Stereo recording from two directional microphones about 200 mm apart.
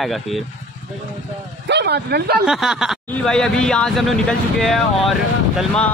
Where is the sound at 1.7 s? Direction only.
55° right (ahead or behind).